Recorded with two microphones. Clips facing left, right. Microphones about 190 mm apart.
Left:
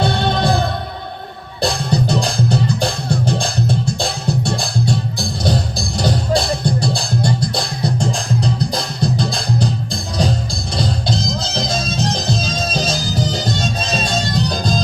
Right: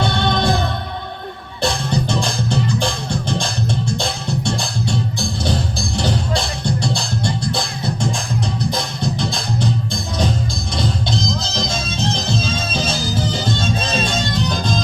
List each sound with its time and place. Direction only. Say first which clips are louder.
0.0 s music: left 1 dB; 35° left (ahead or behind)
1.6 s music: left 2 dB; 35° left (ahead or behind)